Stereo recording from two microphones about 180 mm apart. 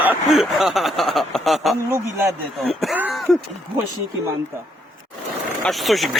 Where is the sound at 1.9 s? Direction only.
15° right (ahead or behind).